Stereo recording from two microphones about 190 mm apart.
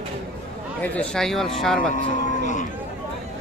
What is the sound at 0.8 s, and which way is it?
Speech, 5° left (ahead or behind).